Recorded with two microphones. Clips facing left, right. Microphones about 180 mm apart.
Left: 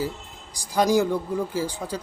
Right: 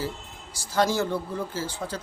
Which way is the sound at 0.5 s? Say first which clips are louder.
Left 4 dB; 15° left (ahead or behind).